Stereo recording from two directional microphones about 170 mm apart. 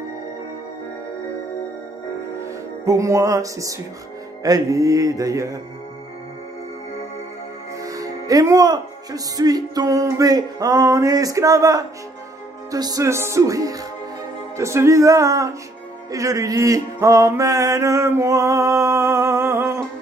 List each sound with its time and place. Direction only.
2.4 s music: 20° right (ahead or behind)
4.4 s speech: 20° right (ahead or behind)
7.8 s speech: 20° right (ahead or behind)
16.1 s mantra: 20° right (ahead or behind)